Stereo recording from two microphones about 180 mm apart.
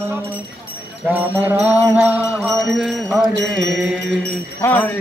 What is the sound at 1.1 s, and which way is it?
Mantra, 10° right (ahead or behind).